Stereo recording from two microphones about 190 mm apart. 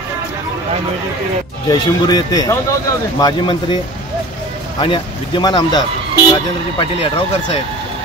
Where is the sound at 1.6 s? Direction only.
20° left (ahead or behind).